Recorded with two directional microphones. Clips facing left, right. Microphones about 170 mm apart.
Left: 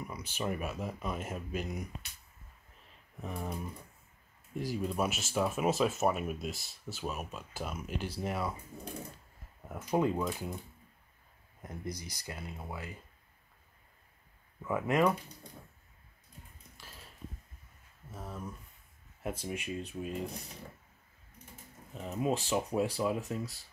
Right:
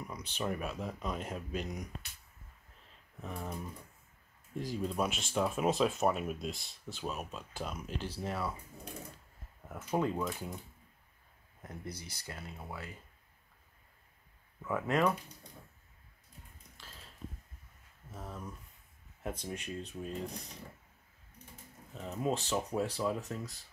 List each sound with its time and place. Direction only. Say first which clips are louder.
0.0 s speech: left 1 dB; 5° left (ahead or behind)
3.2 s speech: left 2 dB; 10° left (ahead or behind)
4.6 s speech: left 1 dB; 10° left (ahead or behind)
9.7 s speech: left 3 dB; 10° left (ahead or behind)
11.6 s speech: left 3 dB; 15° left (ahead or behind)
14.6 s speech: left 2 dB; 10° left (ahead or behind)
18.1 s speech: left 2 dB; 5° left (ahead or behind)
21.9 s speech: left 2 dB; 10° left (ahead or behind)